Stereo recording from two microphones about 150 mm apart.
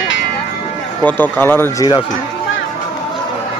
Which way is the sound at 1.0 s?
10° left (ahead or behind).